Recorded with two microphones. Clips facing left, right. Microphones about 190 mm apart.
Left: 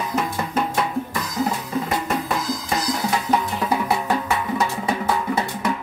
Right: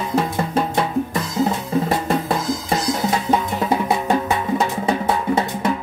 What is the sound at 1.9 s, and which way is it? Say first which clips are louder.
Music: right 4 dB; 30° right (ahead or behind).